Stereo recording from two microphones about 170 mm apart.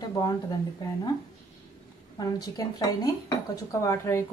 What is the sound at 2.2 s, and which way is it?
Speech, 20° left (ahead or behind).